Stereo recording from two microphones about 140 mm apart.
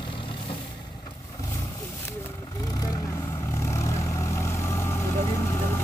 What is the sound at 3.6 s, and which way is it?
Vehicle, 20° left (ahead or behind).